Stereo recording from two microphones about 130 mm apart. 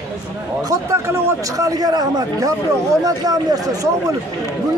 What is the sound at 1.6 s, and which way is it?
A man's voice, 30° right (ahead or behind).